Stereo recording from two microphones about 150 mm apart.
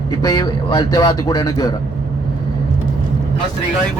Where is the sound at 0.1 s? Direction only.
25° left (ahead or behind).